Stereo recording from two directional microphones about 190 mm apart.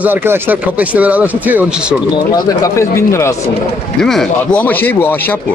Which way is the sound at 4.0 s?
Centre (ahead or behind).